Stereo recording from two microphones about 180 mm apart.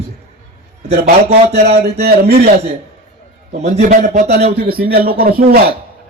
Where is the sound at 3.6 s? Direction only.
40° right (ahead or behind).